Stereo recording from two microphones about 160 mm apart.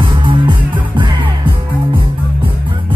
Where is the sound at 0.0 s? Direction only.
30° right (ahead or behind).